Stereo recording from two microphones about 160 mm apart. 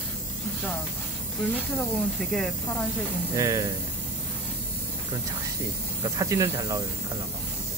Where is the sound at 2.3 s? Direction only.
5° left (ahead or behind).